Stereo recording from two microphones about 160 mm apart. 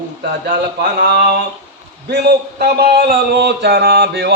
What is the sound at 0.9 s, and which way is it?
A man's voice, 90° right.